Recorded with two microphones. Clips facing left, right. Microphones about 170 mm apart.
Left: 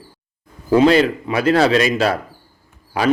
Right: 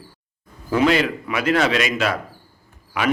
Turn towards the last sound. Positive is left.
turn(degrees=35)  # may be behind; listen again after turning